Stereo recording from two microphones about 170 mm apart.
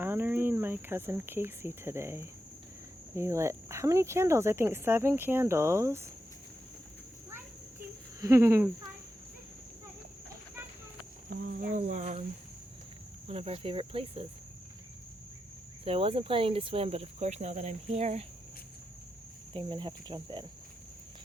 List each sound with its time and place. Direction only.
0.0 s cricket: 10° right (ahead or behind)
3.2 s speech: 15° right (ahead or behind)
8.2 s speech: 15° right (ahead or behind)
11.3 s cricket: 60° right (ahead or behind)
11.8 s speech: 45° right (ahead or behind)
13.2 s speech: 35° right (ahead or behind)
15.8 s speech: 35° right (ahead or behind)
19.5 s cricket: 30° right (ahead or behind)